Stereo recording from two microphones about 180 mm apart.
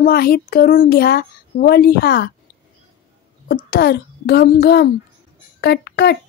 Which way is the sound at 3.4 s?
65° left (ahead or behind).